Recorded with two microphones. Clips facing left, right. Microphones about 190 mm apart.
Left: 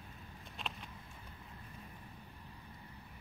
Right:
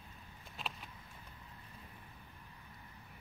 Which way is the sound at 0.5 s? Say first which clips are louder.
Even; 5° right (ahead or behind).